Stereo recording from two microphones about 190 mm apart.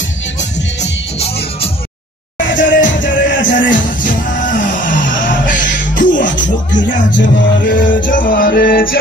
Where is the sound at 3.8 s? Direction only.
45° left (ahead or behind).